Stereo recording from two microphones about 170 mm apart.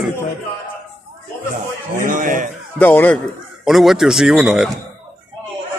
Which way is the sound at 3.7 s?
Centre (ahead or behind).